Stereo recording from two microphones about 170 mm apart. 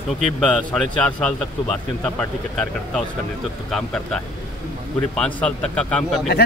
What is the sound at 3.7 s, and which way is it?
A man's voice, 5° left (ahead or behind).